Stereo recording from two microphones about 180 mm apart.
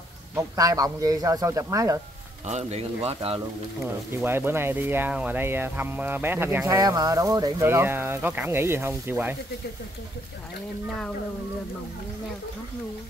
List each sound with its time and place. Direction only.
0.4 s speech: 20° right (ahead or behind)
2.4 s speech: 35° right (ahead or behind)
4.1 s speech: 10° right (ahead or behind)